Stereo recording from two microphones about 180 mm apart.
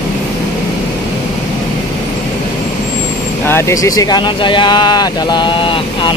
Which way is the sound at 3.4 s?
15° left (ahead or behind).